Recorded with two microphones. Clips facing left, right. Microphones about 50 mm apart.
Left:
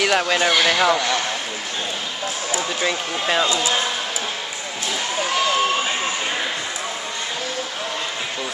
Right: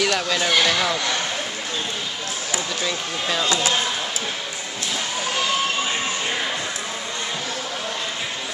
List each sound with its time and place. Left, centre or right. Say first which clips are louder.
0.0 s speech: left 3 dB; left
2.5 s speech: left 3 dB; left